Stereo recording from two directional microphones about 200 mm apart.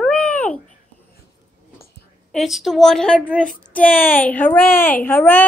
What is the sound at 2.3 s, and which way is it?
A child's voice, centre (ahead or behind).